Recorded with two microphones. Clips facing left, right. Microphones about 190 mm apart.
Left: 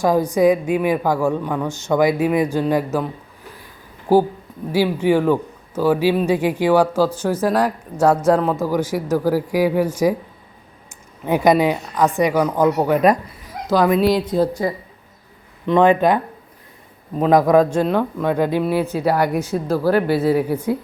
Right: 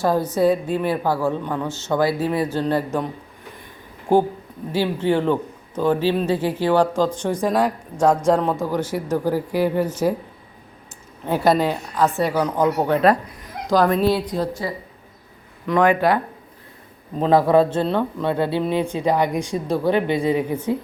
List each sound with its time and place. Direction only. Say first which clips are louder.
0.0 s speech: left 3 dB; 15° left (ahead or behind)
4.1 s speech: left 2 dB; 5° left (ahead or behind)
11.3 s speech: left 3 dB; 15° left (ahead or behind)
15.6 s speech: left 3 dB; 25° left (ahead or behind)
17.2 s speech: left 2 dB; 10° left (ahead or behind)
17.5 s speech: left 2 dB; 25° right (ahead or behind)
17.8 s speech: left 2 dB; 10° left (ahead or behind)